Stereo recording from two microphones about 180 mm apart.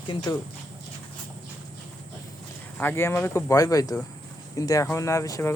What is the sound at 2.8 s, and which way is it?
Speech, 10° left (ahead or behind).